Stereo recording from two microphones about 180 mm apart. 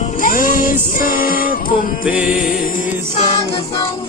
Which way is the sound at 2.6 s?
45° left (ahead or behind).